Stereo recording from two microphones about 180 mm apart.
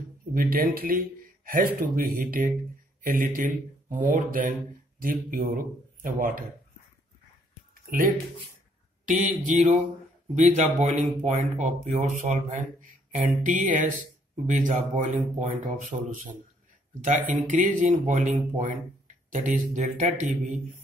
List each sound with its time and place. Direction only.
0.3 s speech: 50° right (ahead or behind)
7.8 s a sound: 50° right (ahead or behind)
10.3 s speech: 45° right (ahead or behind)